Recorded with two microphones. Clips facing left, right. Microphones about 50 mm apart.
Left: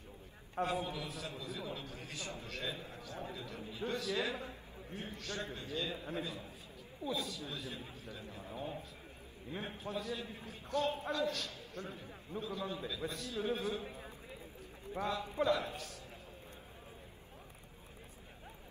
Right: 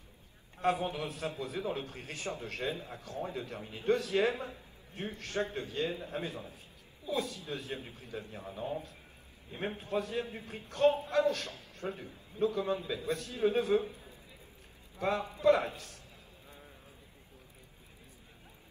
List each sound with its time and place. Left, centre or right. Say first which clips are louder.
0.6 s a man's voice: right 5 dB; right
9.6 s a man's voice: right 7 dB; right
13.8 s a sound: right 1 dB; left
15.0 s a man's voice: right 7 dB; right